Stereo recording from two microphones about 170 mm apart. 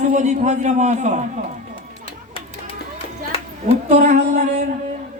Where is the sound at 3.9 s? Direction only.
45° right (ahead or behind).